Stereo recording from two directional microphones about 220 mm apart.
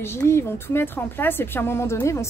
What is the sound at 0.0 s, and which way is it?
A woman's voice, 10° left (ahead or behind).